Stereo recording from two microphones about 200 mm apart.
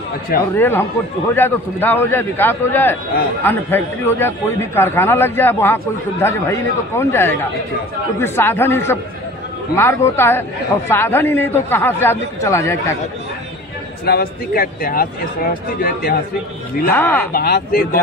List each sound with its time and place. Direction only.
0.6 s a man's voice: 10° left (ahead or behind)
14.0 s a man's voice: 50° left (ahead or behind)
16.9 s a man's voice: 10° left (ahead or behind)
17.3 s a man's voice: 50° left (ahead or behind)